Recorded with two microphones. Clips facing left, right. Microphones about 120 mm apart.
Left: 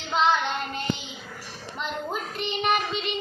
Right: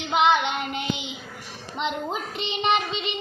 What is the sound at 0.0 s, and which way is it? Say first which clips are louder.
Child singing: right 3 dB; 15° right (ahead or behind).